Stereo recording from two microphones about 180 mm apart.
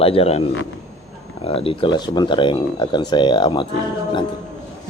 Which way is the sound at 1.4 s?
35° left (ahead or behind).